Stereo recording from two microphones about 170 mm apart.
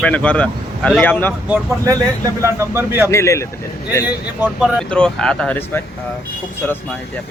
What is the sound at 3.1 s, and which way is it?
Speech, 15° left (ahead or behind).